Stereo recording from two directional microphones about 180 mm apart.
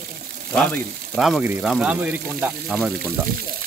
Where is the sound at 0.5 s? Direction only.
5° left (ahead or behind).